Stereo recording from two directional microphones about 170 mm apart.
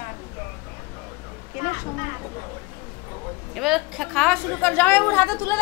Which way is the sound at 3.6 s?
Centre (ahead or behind).